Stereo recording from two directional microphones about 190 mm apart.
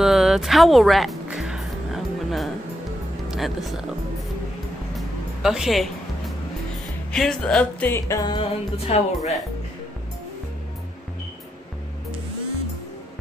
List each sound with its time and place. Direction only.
0.0 s music: centre (ahead or behind)
3.3 s speech: centre (ahead or behind)
4.9 s music: 5° right (ahead or behind)
7.1 s music: 5° left (ahead or behind); by 9.3 s 35° left (ahead or behind)